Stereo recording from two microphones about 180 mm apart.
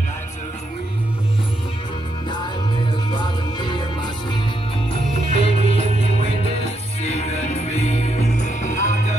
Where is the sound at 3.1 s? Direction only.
25° left (ahead or behind).